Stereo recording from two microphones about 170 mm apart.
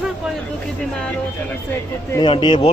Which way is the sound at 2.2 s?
30° left (ahead or behind).